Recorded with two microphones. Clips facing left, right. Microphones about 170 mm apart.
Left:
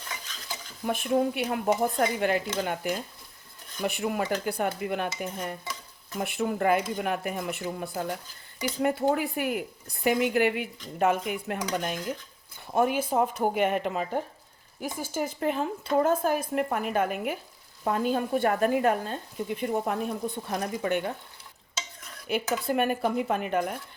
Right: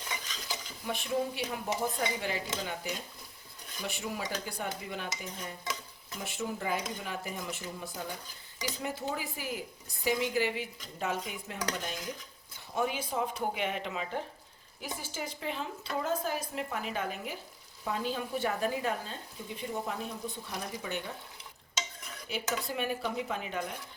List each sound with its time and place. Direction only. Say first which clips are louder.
0.9 s a woman's voice: left 7 dB; 55° left (ahead or behind)
22.3 s a woman's voice: left 8 dB; 55° left (ahead or behind)